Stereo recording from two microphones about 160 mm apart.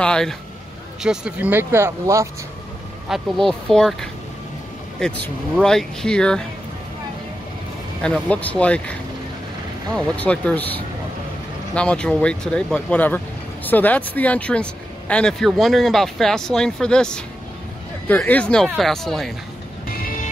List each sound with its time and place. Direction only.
0.0 s speech: 5° left (ahead or behind); by 2.2 s 15° right (ahead or behind)
3.1 s speech: centre (ahead or behind)
8.0 s speech: 5° left (ahead or behind)
9.9 s speech: 10° left (ahead or behind)
20.0 s music: 60° left (ahead or behind)